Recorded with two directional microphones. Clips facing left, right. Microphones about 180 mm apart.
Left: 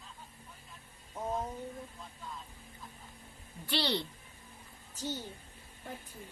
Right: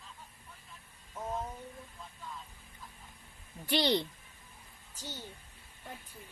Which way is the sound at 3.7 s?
15° right (ahead or behind).